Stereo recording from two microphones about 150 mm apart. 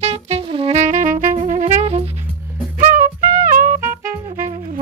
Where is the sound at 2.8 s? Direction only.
70° right (ahead or behind).